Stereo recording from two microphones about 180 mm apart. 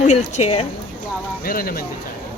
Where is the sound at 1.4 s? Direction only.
55° left (ahead or behind).